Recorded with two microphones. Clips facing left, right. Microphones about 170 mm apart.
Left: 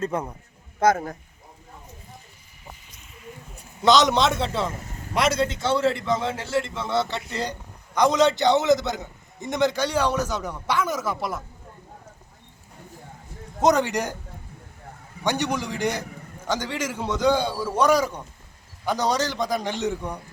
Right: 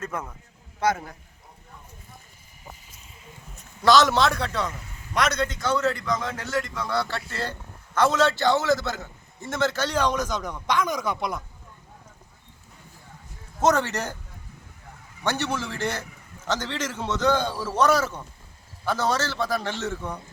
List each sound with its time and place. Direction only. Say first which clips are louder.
0.0 s a man's voice: left 6 dB; 30° left (ahead or behind)
0.8 s speech: left 5 dB; 45° left (ahead or behind)
3.8 s a man's voice: even; 20° left (ahead or behind)
4.7 s vehicle: left 5 dB; 45° left (ahead or behind)
5.1 s a man's voice: left 2 dB; 30° left (ahead or behind); by 11.4 s 5° left (ahead or behind)
13.6 s a man's voice: left 2 dB; 15° left (ahead or behind)
15.2 s a man's voice: left 2 dB; 15° left (ahead or behind)